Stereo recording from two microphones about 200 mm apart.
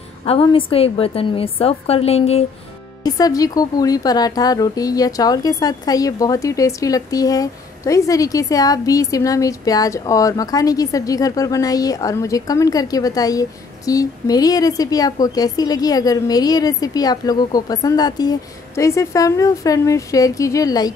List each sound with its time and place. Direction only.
0.2 s a woman's voice: 25° left (ahead or behind)
3.0 s a woman's voice: 20° left (ahead or behind)